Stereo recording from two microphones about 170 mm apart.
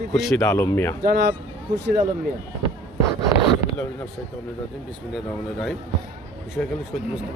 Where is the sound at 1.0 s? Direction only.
75° right (ahead or behind).